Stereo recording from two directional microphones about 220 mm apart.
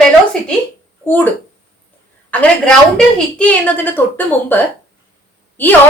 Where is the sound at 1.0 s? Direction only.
10° left (ahead or behind).